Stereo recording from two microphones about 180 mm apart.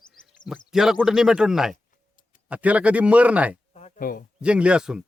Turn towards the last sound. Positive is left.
turn(degrees=-5)  # may be behind; listen again after turning